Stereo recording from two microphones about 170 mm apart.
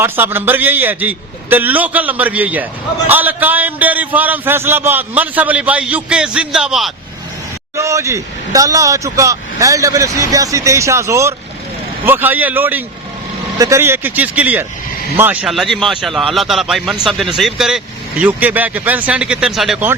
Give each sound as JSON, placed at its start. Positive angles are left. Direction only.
{"t": 0.0, "sound": "a man's voice", "side_deg": -15}
{"t": 7.8, "sound": "a man's voice", "side_deg": -15}